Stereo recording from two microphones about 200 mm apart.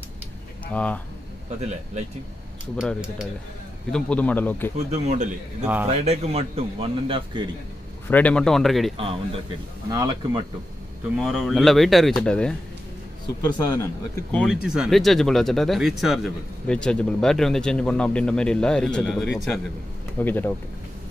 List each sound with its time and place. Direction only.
0.7 s speech: 5° left (ahead or behind)
2.8 s speech: 5° right (ahead or behind)
4.9 s a man's voice: 35° right (ahead or behind)
8.1 s speech: 5° left (ahead or behind)
8.9 s a man's voice: 30° right (ahead or behind)
11.1 s speech: centre (ahead or behind)
13.4 s speech: 20° left (ahead or behind)
14.4 s speech: centre (ahead or behind)
20.2 s speech: 10° left (ahead or behind)